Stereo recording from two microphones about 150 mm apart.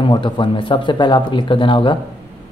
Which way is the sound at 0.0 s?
35° left (ahead or behind).